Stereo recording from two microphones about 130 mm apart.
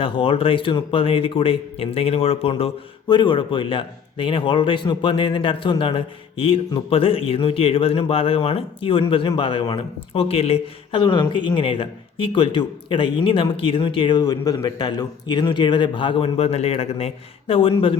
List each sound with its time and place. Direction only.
0.0 s speech: 45° left (ahead or behind)
10.2 s speech: 50° left (ahead or behind)
11.0 s speech: 35° left (ahead or behind)